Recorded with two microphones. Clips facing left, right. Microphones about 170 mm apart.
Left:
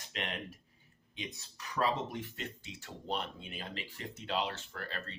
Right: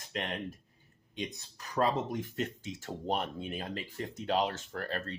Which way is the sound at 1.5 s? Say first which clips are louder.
Right 3 dB; 40° right (ahead or behind).